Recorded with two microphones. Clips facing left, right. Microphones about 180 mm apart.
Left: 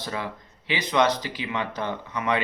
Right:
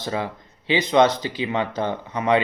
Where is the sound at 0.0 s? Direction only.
25° right (ahead or behind).